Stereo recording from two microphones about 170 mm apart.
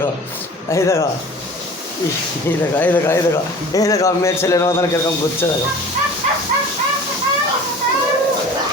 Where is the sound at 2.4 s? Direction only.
15° left (ahead or behind).